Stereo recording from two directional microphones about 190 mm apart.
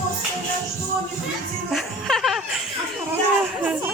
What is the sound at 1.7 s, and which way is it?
Music, centre (ahead or behind).